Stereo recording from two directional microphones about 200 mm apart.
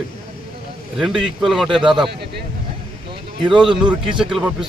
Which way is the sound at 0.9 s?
Centre (ahead or behind).